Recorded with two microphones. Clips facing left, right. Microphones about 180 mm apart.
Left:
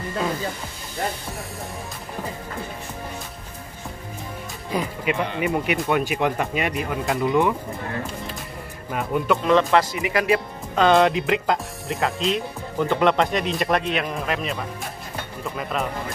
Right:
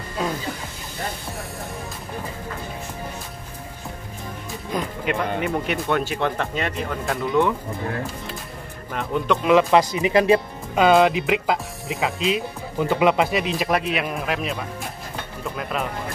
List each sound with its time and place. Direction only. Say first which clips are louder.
5.1 s speech: even; 5° left (ahead or behind)
8.9 s speech: left 1 dB; 5° left (ahead or behind)
9.5 s speech: right 3 dB; 10° right (ahead or behind)
10.7 s speech: right 1 dB; 5° right (ahead or behind)